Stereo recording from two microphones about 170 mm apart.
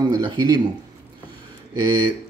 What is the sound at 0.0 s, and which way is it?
Speech, 25° right (ahead or behind).